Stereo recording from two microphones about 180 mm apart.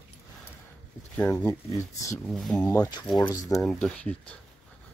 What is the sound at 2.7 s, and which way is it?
Speech, 20° left (ahead or behind).